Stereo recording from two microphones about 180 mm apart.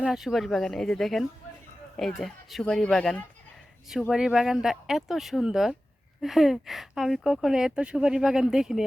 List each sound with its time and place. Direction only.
0.0 s speech: centre (ahead or behind)